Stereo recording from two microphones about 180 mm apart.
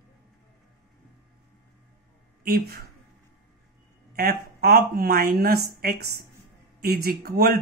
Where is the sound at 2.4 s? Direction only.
60° right (ahead or behind).